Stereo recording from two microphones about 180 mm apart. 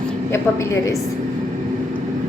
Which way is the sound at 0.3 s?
15° left (ahead or behind).